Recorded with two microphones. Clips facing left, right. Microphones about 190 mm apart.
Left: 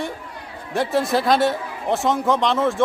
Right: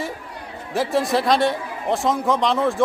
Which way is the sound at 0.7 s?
Centre (ahead or behind).